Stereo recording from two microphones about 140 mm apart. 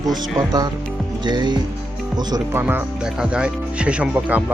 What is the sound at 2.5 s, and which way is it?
Speech, 15° right (ahead or behind).